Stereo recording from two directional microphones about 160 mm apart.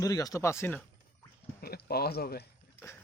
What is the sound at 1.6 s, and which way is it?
Speech, 75° left (ahead or behind).